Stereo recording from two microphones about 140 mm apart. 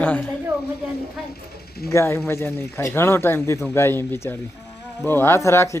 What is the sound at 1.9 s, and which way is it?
Speech, 20° left (ahead or behind).